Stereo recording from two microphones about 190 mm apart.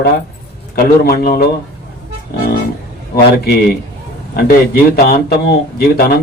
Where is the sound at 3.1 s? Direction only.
55° left (ahead or behind).